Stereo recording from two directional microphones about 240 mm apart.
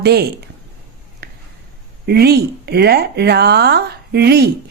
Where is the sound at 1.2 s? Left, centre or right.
Right.